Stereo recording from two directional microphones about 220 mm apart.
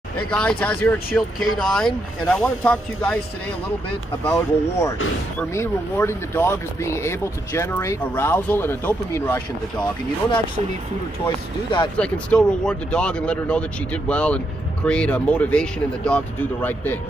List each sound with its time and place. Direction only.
0.3 s speech: 5° left (ahead or behind)
4.2 s speech: 10° left (ahead or behind)
11.2 s speech: 20° left (ahead or behind)
12.0 s speech: 5° left (ahead or behind)